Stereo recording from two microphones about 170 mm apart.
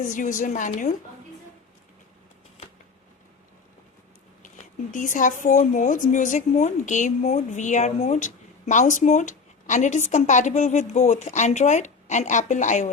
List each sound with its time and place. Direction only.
0.0 s speech: 50° left (ahead or behind)
4.4 s speech: 50° left (ahead or behind)